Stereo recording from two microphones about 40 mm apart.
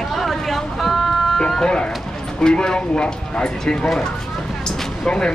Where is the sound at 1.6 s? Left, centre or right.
Left.